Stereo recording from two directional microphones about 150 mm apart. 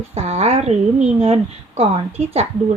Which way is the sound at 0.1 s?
45° right (ahead or behind).